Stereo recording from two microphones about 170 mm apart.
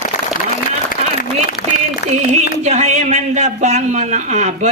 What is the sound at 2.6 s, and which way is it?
A man's voice, 40° right (ahead or behind).